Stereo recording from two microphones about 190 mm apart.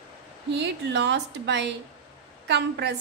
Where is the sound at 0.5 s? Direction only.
65° right (ahead or behind).